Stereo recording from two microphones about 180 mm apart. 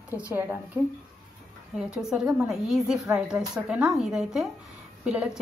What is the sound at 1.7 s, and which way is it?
A woman's voice, centre (ahead or behind).